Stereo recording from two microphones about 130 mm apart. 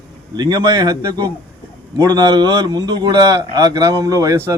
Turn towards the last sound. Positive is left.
turn(degrees=-25)  # may be behind; listen again after turning